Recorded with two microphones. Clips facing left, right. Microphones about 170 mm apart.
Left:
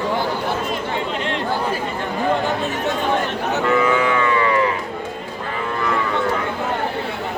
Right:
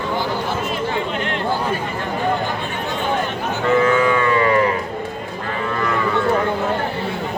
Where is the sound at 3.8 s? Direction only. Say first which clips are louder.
Right 2 dB; 35° right (ahead or behind).